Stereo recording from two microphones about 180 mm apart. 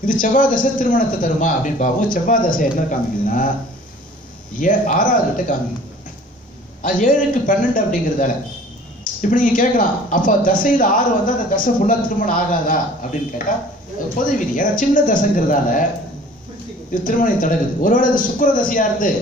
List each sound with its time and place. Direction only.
0.0 s a man's voice: 50° left (ahead or behind)
4.6 s a man's voice: 45° left (ahead or behind)
6.8 s a man's voice: 45° left (ahead or behind)
9.6 s a man's voice: 45° left (ahead or behind)
14.2 s a man's voice: 45° left (ahead or behind)
16.9 s a man's voice: 45° left (ahead or behind)